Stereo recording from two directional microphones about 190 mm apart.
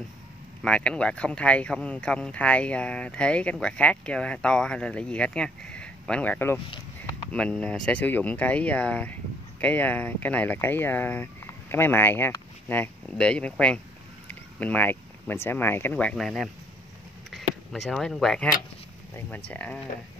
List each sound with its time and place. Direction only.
0.6 s speech: 5° left (ahead or behind)
6.7 s a sound: 25° left (ahead or behind)
7.3 s speech: 5° left (ahead or behind)